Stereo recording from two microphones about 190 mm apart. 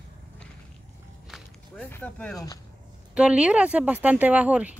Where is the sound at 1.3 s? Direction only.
10° left (ahead or behind).